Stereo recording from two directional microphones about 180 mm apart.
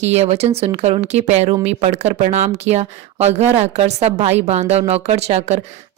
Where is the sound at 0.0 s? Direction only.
35° right (ahead or behind).